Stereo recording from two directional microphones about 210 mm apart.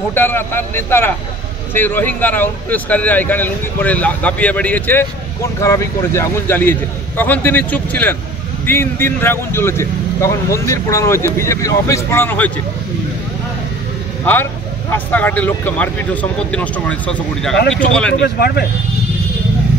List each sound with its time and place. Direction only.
0.1 s speech: 10° left (ahead or behind)
14.2 s speech: 10° left (ahead or behind)
18.2 s speech: 50° left (ahead or behind)